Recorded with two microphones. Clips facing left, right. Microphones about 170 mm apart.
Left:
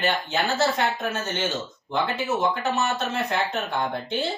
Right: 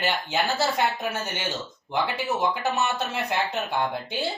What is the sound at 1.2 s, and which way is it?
Speech, 10° right (ahead or behind).